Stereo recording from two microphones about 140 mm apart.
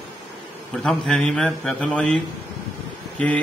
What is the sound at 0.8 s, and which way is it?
A man's voice, 5° left (ahead or behind).